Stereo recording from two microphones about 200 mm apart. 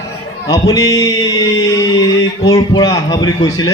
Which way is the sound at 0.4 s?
15° left (ahead or behind).